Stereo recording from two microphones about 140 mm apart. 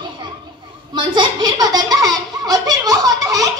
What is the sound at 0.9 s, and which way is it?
Belly laugh, 35° right (ahead or behind).